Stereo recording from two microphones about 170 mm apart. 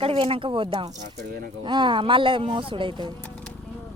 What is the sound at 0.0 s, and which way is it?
Speech, 35° right (ahead or behind).